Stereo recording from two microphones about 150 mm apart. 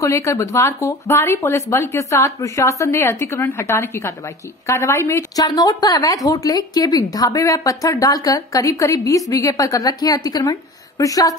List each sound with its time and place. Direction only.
0.0 s a woman's voice: 20° left (ahead or behind)